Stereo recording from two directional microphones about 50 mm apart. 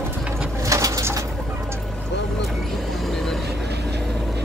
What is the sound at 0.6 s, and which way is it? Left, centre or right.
Bird, right.